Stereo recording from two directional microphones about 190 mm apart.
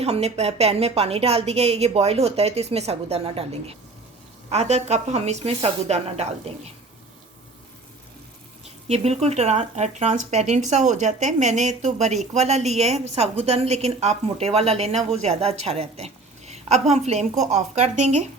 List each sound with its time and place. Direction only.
0.0 s speech: 35° right (ahead or behind)
8.6 s speech: 35° right (ahead or behind)